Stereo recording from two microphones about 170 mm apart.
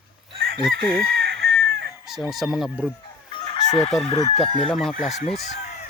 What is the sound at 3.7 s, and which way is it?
Chicken, 40° left (ahead or behind).